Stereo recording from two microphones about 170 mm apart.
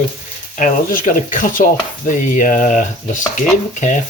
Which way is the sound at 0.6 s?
50° left (ahead or behind).